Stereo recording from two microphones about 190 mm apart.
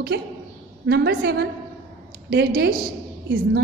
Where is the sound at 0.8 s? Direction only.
60° right (ahead or behind).